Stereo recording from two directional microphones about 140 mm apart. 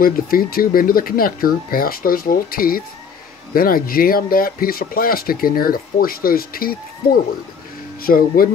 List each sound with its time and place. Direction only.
0.0 s speech: 90° left
8.0 s speech: 90° left